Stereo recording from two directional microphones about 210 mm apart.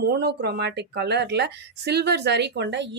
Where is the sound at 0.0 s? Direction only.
50° right (ahead or behind).